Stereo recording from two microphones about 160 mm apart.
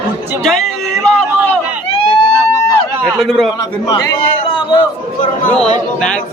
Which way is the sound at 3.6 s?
25° left (ahead or behind).